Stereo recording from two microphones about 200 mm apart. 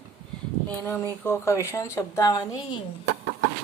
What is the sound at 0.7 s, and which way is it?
A woman's voice, 10° left (ahead or behind).